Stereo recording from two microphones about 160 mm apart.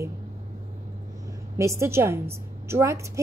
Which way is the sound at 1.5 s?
20° right (ahead or behind).